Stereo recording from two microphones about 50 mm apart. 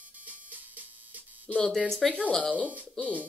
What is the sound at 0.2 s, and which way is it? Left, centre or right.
Music, right.